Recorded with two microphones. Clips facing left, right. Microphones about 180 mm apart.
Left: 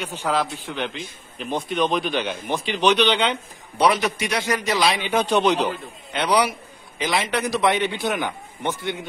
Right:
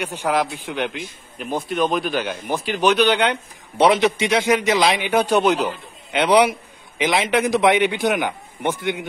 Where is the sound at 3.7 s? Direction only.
25° right (ahead or behind).